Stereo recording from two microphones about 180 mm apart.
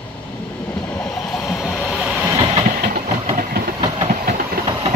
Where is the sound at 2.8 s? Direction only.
50° right (ahead or behind).